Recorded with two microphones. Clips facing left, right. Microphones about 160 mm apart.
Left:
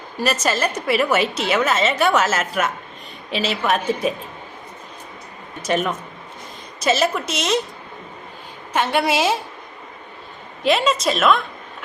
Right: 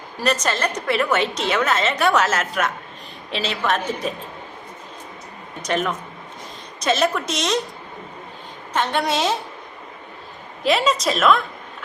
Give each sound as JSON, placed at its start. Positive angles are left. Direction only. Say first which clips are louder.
{"t": 0.2, "sound": "a woman's voice", "louder": "left 1 dB", "side_deg": 5}
{"t": 5.6, "sound": "a woman's voice", "louder": "left 2 dB", "side_deg": 5}
{"t": 8.7, "sound": "a woman's voice", "louder": "left 2 dB", "side_deg": 10}
{"t": 10.6, "sound": "a woman's voice", "louder": "left 1 dB", "side_deg": 0}